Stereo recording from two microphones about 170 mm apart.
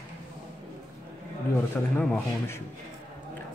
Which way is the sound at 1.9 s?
10° left (ahead or behind).